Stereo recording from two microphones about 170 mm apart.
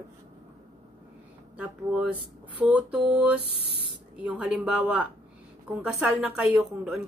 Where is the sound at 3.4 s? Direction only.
35° left (ahead or behind).